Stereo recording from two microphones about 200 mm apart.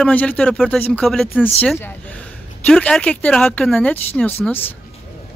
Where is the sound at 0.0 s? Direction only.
5° left (ahead or behind).